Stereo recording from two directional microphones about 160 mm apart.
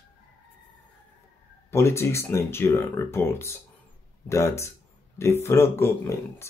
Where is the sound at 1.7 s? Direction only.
15° left (ahead or behind).